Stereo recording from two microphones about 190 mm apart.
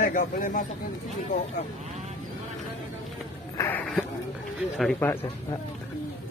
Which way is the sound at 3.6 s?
10° left (ahead or behind).